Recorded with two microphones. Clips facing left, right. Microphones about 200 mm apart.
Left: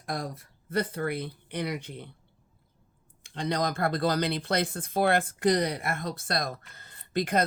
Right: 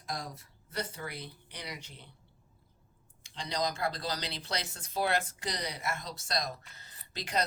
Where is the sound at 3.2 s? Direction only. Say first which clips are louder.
Left 5 dB; 55° left (ahead or behind).